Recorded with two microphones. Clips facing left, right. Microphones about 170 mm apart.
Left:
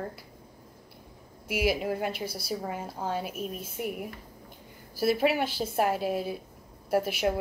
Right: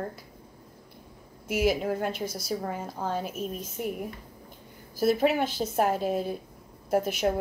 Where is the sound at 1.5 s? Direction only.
45° right (ahead or behind).